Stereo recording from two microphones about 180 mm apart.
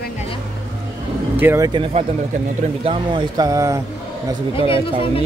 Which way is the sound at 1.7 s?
30° right (ahead or behind).